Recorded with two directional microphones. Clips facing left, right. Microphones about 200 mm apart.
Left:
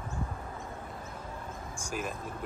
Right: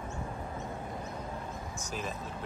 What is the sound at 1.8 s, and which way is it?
Vehicle, 10° left (ahead or behind).